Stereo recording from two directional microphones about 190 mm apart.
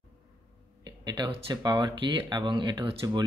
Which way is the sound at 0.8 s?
25° right (ahead or behind).